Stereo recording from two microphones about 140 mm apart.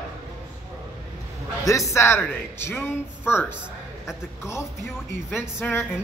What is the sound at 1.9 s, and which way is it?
A man's voice, 20° left (ahead or behind).